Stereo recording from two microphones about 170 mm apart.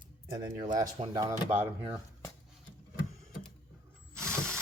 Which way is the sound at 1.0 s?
35° right (ahead or behind).